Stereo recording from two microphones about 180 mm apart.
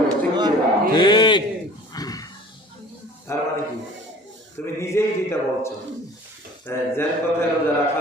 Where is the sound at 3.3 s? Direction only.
15° left (ahead or behind).